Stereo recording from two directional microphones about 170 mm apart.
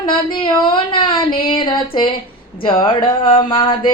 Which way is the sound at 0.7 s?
30° left (ahead or behind).